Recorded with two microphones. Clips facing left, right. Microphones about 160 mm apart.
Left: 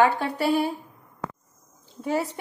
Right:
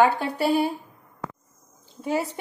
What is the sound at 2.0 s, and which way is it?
Speech, 5° right (ahead or behind).